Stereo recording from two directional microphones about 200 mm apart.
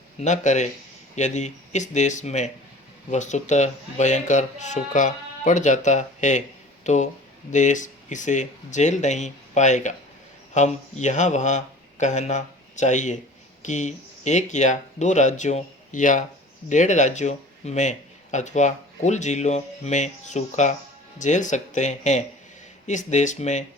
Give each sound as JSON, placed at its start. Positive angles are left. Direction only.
{"t": 0.2, "sound": "a man's voice", "side_deg": 35}